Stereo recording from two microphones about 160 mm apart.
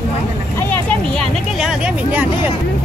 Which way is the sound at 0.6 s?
10° left (ahead or behind).